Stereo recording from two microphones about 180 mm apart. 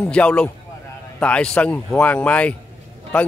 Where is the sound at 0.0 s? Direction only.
5° left (ahead or behind).